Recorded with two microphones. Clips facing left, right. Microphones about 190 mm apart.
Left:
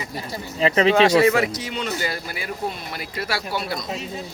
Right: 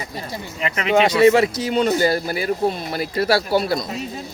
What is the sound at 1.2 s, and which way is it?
Speech, 30° right (ahead or behind).